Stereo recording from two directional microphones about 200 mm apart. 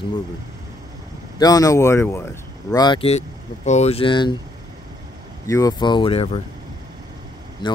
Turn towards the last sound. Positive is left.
turn(degrees=20)  # may be behind; listen again after turning